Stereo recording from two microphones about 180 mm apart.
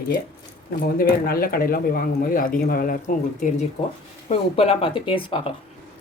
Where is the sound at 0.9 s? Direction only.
55° left (ahead or behind).